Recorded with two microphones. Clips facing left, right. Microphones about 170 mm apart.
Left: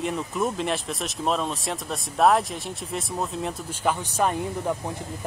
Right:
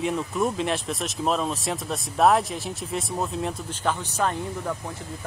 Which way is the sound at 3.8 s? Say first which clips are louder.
Left 2 dB; 10° left (ahead or behind).